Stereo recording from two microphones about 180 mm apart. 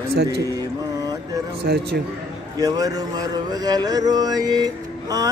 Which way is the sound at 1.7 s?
60° right (ahead or behind).